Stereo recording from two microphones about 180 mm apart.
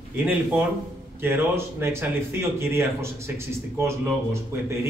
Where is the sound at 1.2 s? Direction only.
10° right (ahead or behind).